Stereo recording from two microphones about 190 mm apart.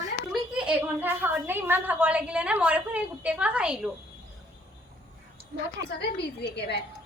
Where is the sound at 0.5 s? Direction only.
5° right (ahead or behind).